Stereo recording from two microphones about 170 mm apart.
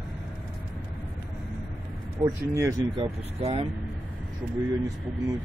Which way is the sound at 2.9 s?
35° right (ahead or behind).